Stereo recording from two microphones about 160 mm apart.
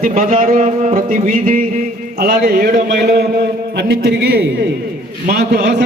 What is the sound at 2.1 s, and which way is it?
Speech, 90° right.